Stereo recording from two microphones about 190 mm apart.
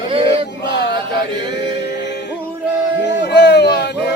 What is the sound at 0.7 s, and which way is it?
Chant, 65° left (ahead or behind).